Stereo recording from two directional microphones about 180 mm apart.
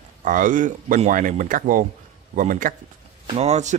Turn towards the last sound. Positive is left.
turn(degrees=-40)  # may be behind; listen again after turning